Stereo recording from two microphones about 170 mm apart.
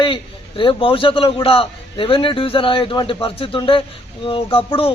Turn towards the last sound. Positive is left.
turn(degrees=30)  # may be behind; listen again after turning